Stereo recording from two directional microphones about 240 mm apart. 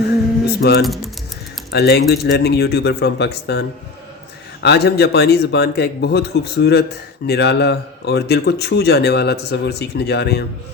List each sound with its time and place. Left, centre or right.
0.4 s typing: left
0.8 s speech: centre
1.7 s speech: left